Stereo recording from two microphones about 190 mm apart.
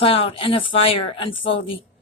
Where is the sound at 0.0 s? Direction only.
30° left (ahead or behind).